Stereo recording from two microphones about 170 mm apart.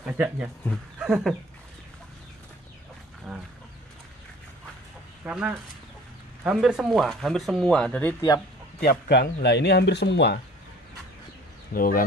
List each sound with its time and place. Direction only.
0.0 s speech: 10° right (ahead or behind)
0.9 s a sound: 5° right (ahead or behind)
3.3 s speech: 5° left (ahead or behind)
5.2 s speech: 5° right (ahead or behind)
9.1 s speech: 85° left
11.7 s speech: 55° left (ahead or behind)